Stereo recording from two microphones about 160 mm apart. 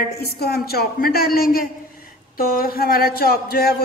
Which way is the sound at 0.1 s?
75° left (ahead or behind).